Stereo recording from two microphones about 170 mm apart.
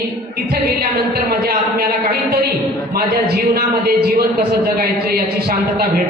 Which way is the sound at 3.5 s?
65° right (ahead or behind).